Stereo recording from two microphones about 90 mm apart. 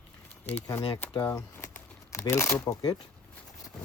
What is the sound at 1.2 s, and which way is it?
Speech, 35° left (ahead or behind).